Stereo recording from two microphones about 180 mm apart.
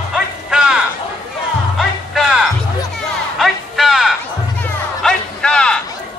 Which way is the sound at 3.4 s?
Centre (ahead or behind).